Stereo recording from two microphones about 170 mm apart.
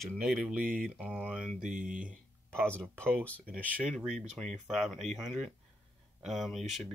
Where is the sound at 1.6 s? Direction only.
50° right (ahead or behind).